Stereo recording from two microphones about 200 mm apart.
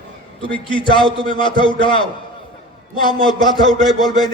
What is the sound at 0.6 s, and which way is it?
Music, 25° left (ahead or behind).